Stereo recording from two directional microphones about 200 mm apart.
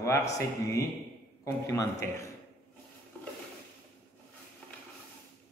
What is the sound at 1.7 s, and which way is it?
Speech, 15° left (ahead or behind).